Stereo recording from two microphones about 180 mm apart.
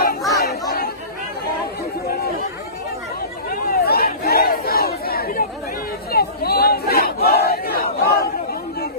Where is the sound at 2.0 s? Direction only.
60° left (ahead or behind).